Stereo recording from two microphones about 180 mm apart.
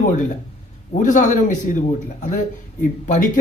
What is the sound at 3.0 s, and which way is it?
Speech, 45° left (ahead or behind).